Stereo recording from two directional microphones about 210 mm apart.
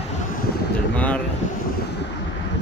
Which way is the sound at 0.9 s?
5° left (ahead or behind).